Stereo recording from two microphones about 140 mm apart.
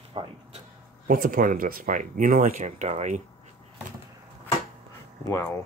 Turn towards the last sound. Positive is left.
turn(degrees=25)  # may be behind; listen again after turning